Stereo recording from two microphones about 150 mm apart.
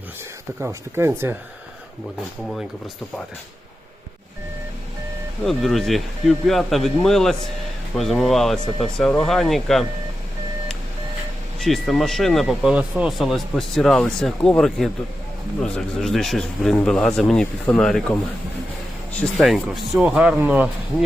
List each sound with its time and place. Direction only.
0.6 s speech: 15° right (ahead or behind)
5.5 s speech: centre (ahead or behind)
11.6 s speech: centre (ahead or behind)
19.2 s speech: centre (ahead or behind)